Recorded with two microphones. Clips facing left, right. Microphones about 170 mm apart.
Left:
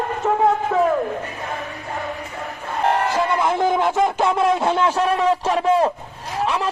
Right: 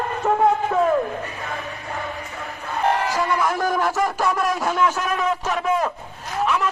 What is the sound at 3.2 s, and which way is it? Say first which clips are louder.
Speech: left 2 dB; 25° left (ahead or behind).